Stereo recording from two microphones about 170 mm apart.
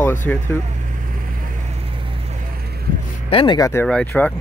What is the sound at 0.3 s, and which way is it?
Speech, 10° left (ahead or behind).